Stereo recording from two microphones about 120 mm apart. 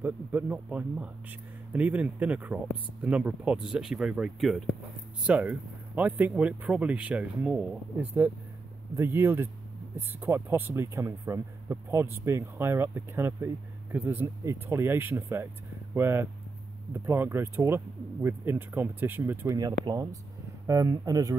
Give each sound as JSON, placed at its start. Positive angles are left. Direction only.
{"t": 0.0, "sound": "speech", "side_deg": -15}
{"t": 5.2, "sound": "speech", "side_deg": -10}